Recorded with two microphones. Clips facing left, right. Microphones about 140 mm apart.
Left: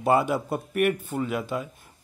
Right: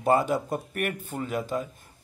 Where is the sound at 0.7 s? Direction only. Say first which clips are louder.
Left 7 dB; 45° right (ahead or behind).